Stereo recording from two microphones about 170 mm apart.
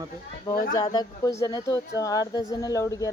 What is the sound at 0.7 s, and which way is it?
Speech, 25° left (ahead or behind).